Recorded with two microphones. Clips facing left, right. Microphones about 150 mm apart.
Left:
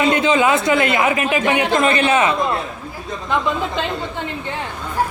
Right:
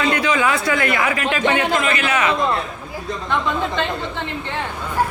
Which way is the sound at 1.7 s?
35° left (ahead or behind).